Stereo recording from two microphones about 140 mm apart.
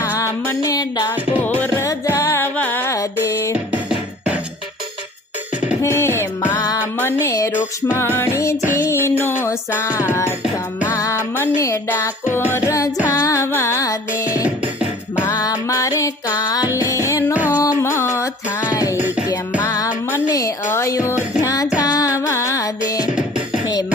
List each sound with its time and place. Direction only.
0.2 s music: 20° left (ahead or behind)
1.1 s music: 10° right (ahead or behind)
1.5 s music: 15° left (ahead or behind)
3.7 s music: 10° right (ahead or behind)
5.8 s music: 20° left (ahead or behind)
7.5 s music: 10° right (ahead or behind)
8.1 s music: 20° left (ahead or behind)
15.3 s music: 25° left (ahead or behind)
17.3 s music: 10° right (ahead or behind)
17.6 s music: 20° left (ahead or behind)
18.9 s music: 15° right (ahead or behind)
19.6 s music: 25° left (ahead or behind)
21.4 s child singing: 25° left (ahead or behind)
21.8 s music: 25° left (ahead or behind)